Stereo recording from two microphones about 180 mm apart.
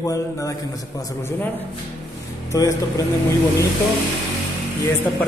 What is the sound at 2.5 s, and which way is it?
Mantra, 20° left (ahead or behind).